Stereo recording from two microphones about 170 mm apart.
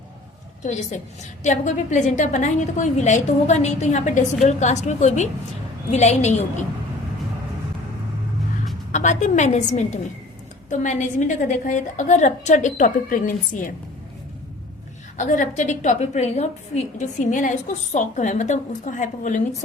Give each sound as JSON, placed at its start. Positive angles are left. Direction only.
{"t": 0.6, "sound": "a woman's voice", "side_deg": 45}
{"t": 8.9, "sound": "a woman's voice", "side_deg": 45}
{"t": 15.2, "sound": "a woman's voice", "side_deg": 45}